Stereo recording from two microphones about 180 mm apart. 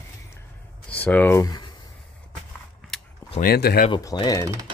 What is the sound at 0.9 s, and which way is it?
Speech, 10° left (ahead or behind).